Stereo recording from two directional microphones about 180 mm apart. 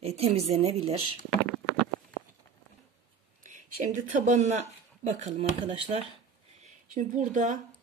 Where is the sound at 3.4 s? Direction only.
45° right (ahead or behind).